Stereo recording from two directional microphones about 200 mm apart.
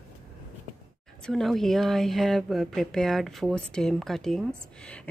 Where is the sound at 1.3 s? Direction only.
Centre (ahead or behind).